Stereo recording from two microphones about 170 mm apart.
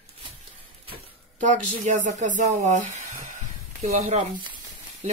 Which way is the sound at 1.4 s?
45° right (ahead or behind).